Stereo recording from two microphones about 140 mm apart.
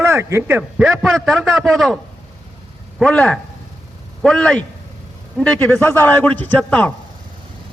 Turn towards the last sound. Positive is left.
turn(degrees=10)  # may be behind; listen again after turning